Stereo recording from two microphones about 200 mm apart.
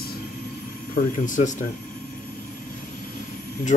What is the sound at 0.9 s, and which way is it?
Speech, 40° left (ahead or behind).